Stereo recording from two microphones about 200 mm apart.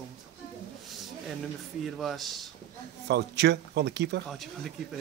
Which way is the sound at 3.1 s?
60° right (ahead or behind).